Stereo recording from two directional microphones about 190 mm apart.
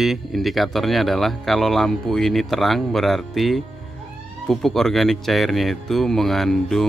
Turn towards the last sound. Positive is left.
turn(degrees=0)  # may be behind; listen again after turning